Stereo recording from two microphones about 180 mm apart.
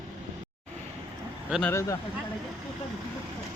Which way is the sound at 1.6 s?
15° left (ahead or behind).